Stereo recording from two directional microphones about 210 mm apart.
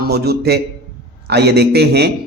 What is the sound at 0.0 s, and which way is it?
A man's voice, 50° right (ahead or behind).